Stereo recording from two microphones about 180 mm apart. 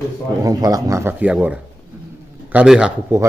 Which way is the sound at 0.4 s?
20° right (ahead or behind).